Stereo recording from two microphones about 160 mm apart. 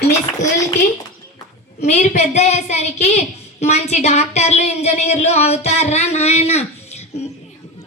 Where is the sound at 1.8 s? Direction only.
45° left (ahead or behind).